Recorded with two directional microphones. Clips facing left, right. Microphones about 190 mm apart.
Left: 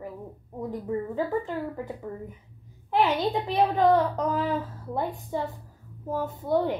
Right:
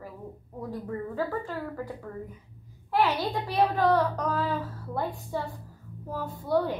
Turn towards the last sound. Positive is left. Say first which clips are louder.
# left 2 dB
turn(degrees=20)  # may be behind; listen again after turning